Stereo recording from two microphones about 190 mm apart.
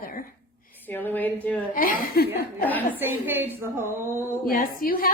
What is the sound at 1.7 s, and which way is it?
Speech, 50° left (ahead or behind).